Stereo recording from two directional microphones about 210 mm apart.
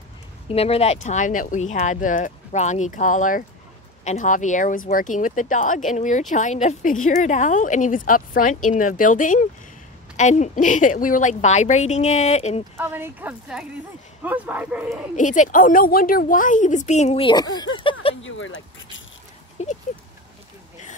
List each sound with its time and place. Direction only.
0.5 s speech: 30° left (ahead or behind)
12.7 s a woman's voice: 10° right (ahead or behind)
15.1 s speech: 35° left (ahead or behind); by 17.6 s 20° left (ahead or behind)
18.2 s keys jangling: 65° left (ahead or behind)
19.6 s speech: 35° left (ahead or behind)